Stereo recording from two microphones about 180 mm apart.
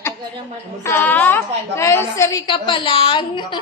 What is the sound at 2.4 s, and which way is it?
Speech, 30° left (ahead or behind).